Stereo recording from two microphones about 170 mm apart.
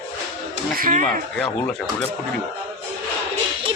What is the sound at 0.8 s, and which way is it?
Speech, 50° right (ahead or behind).